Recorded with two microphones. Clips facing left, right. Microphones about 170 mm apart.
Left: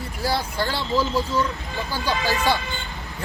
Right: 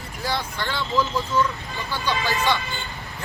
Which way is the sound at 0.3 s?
35° left (ahead or behind).